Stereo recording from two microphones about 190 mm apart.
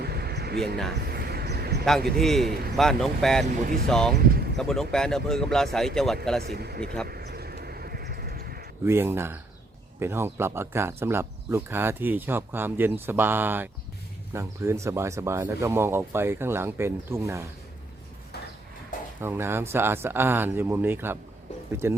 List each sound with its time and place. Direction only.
0.0 s a sound: 55° right (ahead or behind)
1.1 s vehicle: 55° right (ahead or behind)
2.0 s speech: centre (ahead or behind)
3.4 s speech: 45° right (ahead or behind)
3.8 s speech: 5° left (ahead or behind)
4.2 s vehicle: 55° right (ahead or behind)
4.5 s speech: centre (ahead or behind)
6.4 s speech: 55° right (ahead or behind)
7.1 s a sound: 55° right (ahead or behind)
8.8 s speech: 15° right (ahead or behind)
19.2 s speech: 10° right (ahead or behind)